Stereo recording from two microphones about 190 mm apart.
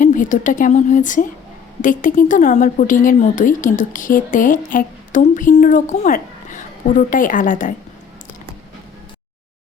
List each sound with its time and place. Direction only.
0.0 s a woman's voice: 45° left (ahead or behind)